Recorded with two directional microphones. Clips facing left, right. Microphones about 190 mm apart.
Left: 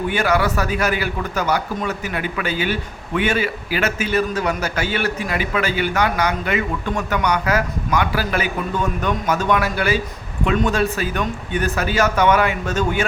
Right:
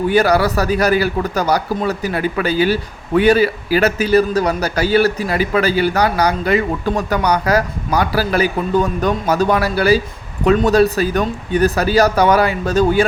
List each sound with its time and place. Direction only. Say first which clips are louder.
0.1 s a man's voice: right 6 dB; 40° right (ahead or behind)